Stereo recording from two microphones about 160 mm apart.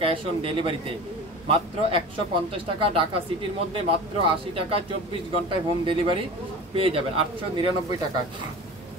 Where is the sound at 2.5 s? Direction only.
35° right (ahead or behind).